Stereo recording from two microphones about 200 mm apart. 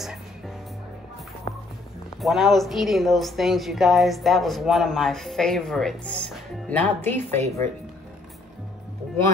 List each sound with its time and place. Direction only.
1.5 s music: 35° left (ahead or behind)
2.2 s a woman's voice: centre (ahead or behind)